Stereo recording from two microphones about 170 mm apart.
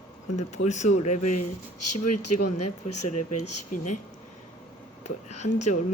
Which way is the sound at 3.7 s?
45° left (ahead or behind).